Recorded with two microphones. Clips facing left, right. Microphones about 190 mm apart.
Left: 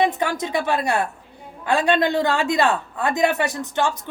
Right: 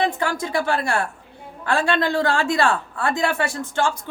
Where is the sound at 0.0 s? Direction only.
20° left (ahead or behind).